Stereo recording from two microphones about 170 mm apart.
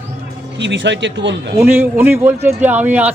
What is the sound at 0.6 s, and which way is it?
Speech, 90° right.